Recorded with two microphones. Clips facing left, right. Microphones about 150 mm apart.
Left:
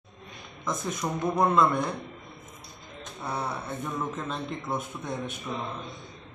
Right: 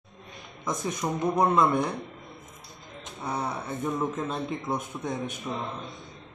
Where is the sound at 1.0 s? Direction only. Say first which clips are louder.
Right 1 dB; 15° right (ahead or behind).